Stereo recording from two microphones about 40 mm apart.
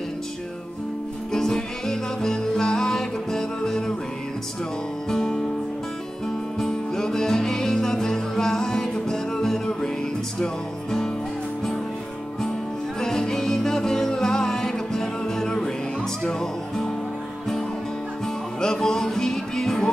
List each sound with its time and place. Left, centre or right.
1.3 s music: centre
6.6 s music: centre
13.0 s music: centre
18.6 s music: centre